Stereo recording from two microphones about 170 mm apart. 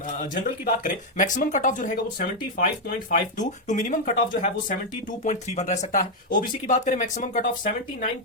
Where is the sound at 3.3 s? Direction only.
45° left (ahead or behind).